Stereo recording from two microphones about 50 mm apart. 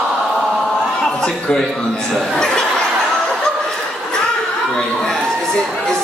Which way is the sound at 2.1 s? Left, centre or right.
Centre.